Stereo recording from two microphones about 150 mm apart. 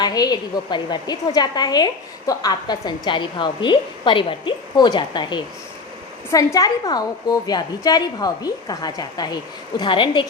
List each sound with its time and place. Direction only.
0.0 s a woman's voice: 25° left (ahead or behind)